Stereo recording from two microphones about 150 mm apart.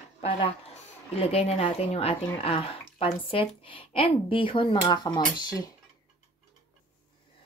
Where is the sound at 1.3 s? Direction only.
45° left (ahead or behind); by 5.7 s 25° left (ahead or behind).